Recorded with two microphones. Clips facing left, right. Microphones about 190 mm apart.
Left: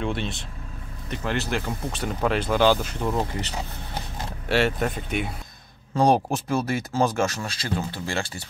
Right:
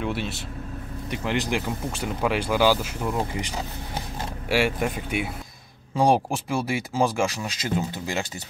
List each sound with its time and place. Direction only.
0.0 s speech: 5° right (ahead or behind)